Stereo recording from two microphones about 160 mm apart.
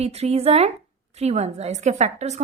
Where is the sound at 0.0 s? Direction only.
40° right (ahead or behind).